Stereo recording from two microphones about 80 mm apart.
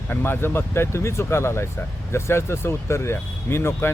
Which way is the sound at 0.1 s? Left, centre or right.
Left.